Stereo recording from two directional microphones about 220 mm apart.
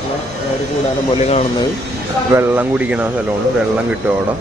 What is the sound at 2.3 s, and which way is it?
Speech, 5° right (ahead or behind).